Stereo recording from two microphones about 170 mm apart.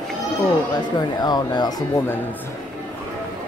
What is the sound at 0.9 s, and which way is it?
Speech, 25° left (ahead or behind).